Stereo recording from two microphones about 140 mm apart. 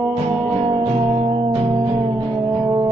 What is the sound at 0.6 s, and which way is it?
Music, 35° right (ahead or behind).